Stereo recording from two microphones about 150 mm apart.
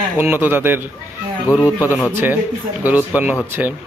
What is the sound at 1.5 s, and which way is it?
Speech, 25° left (ahead or behind).